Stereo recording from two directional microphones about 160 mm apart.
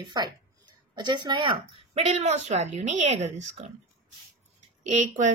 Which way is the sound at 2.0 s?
45° right (ahead or behind).